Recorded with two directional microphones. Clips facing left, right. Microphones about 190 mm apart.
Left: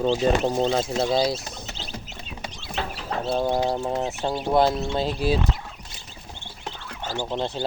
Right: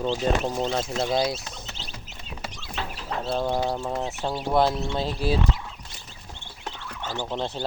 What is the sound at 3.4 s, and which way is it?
Speech, 15° left (ahead or behind).